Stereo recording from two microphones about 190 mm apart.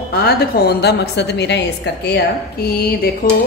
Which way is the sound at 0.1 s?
55° left (ahead or behind).